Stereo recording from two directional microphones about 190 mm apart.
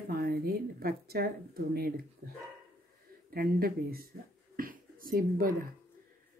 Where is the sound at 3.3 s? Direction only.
50° right (ahead or behind).